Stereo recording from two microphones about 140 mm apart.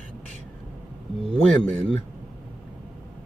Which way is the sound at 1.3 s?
5° left (ahead or behind).